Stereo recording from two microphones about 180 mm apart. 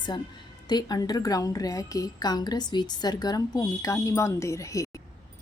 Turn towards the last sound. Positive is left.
turn(degrees=15)  # may be behind; listen again after turning